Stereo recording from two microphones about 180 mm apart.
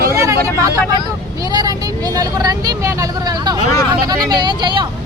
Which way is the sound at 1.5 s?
20° right (ahead or behind).